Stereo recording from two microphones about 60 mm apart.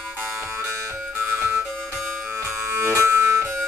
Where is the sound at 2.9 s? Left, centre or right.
Right.